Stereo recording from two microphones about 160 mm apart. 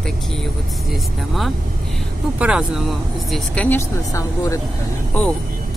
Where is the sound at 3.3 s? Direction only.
10° left (ahead or behind).